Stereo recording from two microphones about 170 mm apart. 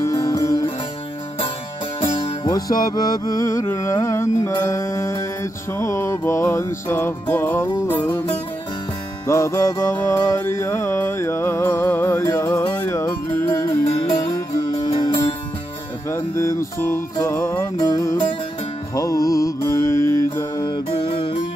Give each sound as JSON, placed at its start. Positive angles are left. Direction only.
{"t": 0.0, "sound": "music", "side_deg": 20}
{"t": 2.0, "sound": "music", "side_deg": 30}
{"t": 9.3, "sound": "music", "side_deg": 15}
{"t": 14.9, "sound": "music", "side_deg": 30}
{"t": 16.1, "sound": "music", "side_deg": 15}